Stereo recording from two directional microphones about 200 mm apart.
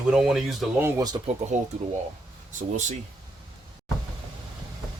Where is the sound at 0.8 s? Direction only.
20° right (ahead or behind).